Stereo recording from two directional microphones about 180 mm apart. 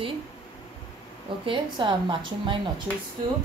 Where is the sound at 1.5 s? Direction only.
25° right (ahead or behind).